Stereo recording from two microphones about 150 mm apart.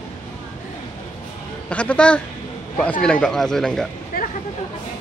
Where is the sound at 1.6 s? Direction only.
5° left (ahead or behind).